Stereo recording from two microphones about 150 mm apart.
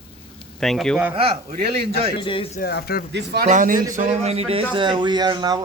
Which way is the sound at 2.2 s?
35° left (ahead or behind).